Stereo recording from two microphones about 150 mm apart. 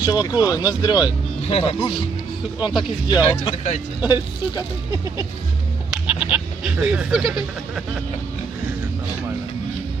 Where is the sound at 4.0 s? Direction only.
15° right (ahead or behind).